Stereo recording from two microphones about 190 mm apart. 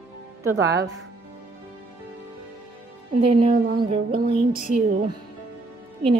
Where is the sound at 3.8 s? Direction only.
30° right (ahead or behind).